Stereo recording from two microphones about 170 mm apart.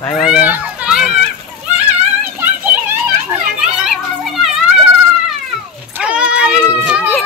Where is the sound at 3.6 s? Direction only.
Centre (ahead or behind).